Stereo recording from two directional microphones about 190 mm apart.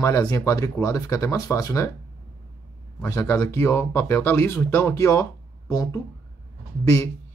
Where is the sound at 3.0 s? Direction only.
15° left (ahead or behind).